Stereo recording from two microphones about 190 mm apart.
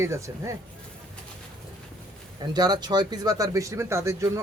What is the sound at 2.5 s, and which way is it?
Speech, 20° right (ahead or behind).